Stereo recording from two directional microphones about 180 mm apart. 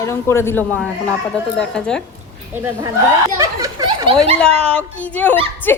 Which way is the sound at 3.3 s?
20° right (ahead or behind).